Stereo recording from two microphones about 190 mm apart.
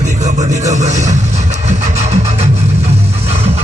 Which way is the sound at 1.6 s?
35° right (ahead or behind).